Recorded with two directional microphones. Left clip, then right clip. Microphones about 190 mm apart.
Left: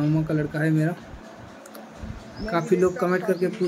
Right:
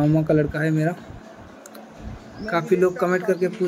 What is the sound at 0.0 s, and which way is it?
Speech, 10° right (ahead or behind).